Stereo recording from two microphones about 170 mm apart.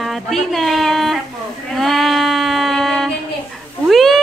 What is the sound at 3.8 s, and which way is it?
Cat, centre (ahead or behind).